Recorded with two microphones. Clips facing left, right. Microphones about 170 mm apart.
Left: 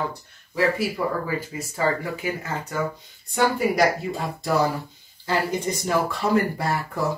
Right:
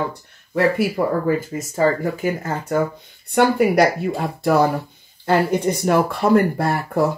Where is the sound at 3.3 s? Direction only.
65° right (ahead or behind).